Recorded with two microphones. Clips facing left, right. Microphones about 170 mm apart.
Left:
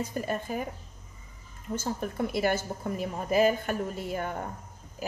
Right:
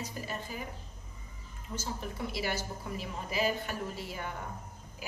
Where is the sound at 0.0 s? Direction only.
50° left (ahead or behind).